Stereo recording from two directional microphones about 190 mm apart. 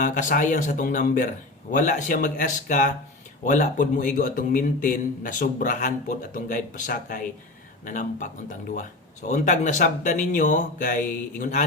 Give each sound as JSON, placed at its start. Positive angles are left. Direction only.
{"t": 0.0, "sound": "a man's voice", "side_deg": 45}